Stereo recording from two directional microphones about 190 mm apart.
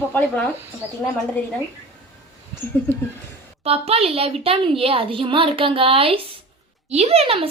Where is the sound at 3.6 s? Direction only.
30° right (ahead or behind).